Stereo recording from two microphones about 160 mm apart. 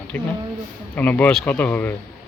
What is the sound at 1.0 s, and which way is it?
Speech, 10° left (ahead or behind).